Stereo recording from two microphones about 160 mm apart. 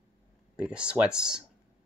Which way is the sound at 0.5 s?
5° right (ahead or behind).